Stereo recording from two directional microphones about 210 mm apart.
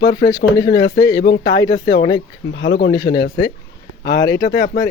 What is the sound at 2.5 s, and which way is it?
Speech, 65° left (ahead or behind).